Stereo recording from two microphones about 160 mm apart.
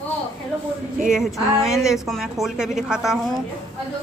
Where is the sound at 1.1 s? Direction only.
Centre (ahead or behind).